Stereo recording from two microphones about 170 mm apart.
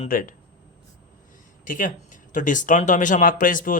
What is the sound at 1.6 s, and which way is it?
Speech, 50° left (ahead or behind).